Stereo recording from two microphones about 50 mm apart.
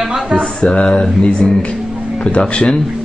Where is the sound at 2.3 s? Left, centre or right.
Left.